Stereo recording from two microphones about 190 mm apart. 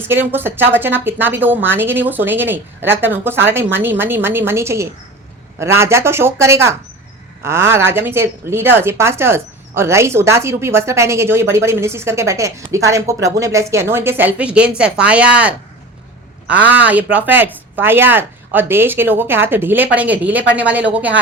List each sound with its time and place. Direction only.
0.1 s speech: 10° right (ahead or behind)